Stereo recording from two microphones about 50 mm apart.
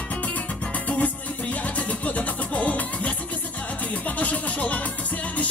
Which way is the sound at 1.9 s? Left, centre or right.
Left.